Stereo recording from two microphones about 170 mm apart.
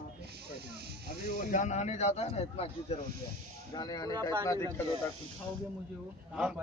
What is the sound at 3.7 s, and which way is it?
Speech, 25° left (ahead or behind).